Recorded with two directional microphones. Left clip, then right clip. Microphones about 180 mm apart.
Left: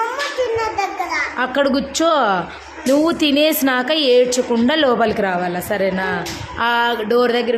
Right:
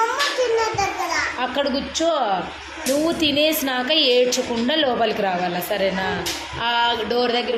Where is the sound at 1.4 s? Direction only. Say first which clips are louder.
Left 5 dB; 40° left (ahead or behind).